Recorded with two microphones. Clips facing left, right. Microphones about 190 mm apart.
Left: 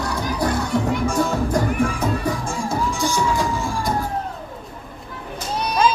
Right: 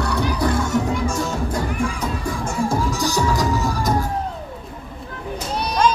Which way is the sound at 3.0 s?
40° right (ahead or behind).